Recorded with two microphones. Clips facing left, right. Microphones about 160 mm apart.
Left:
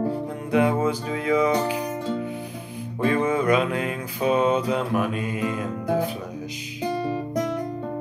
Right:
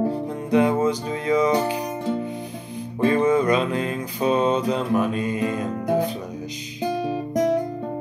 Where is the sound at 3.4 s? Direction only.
10° left (ahead or behind).